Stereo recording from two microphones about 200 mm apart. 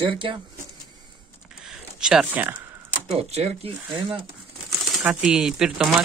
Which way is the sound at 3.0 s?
30° right (ahead or behind).